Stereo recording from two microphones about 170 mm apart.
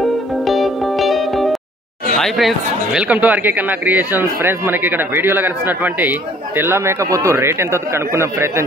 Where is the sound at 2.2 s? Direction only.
Centre (ahead or behind).